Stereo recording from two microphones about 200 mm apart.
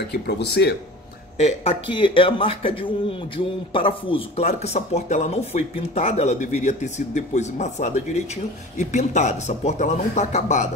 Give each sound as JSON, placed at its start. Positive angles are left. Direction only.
{"t": 0.1, "sound": "speech", "side_deg": 55}
{"t": 1.4, "sound": "a man's voice", "side_deg": 30}